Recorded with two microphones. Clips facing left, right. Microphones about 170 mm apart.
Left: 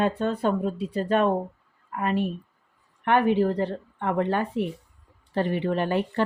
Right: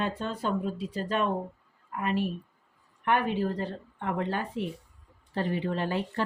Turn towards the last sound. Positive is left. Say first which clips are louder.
# left 5 dB
turn(degrees=65)  # may be behind; listen again after turning